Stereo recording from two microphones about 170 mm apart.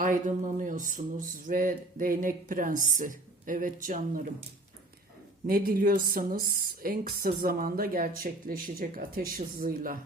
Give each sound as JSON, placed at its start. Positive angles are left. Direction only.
{"t": 0.0, "sound": "speech", "side_deg": -50}
{"t": 5.5, "sound": "speech", "side_deg": -60}